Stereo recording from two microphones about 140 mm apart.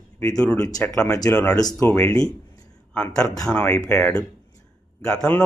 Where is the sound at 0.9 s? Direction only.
25° left (ahead or behind).